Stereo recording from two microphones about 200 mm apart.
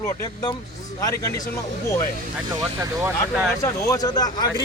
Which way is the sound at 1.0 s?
20° left (ahead or behind).